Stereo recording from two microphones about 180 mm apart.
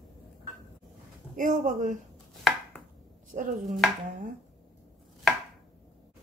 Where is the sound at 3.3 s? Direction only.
45° right (ahead or behind).